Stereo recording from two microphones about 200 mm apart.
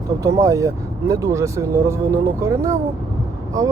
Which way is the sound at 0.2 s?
15° right (ahead or behind).